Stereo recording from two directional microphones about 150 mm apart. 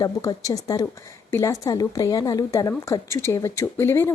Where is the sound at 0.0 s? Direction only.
25° left (ahead or behind).